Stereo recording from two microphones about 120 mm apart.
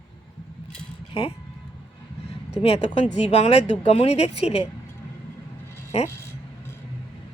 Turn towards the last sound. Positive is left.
turn(degrees=65)  # may be behind; listen again after turning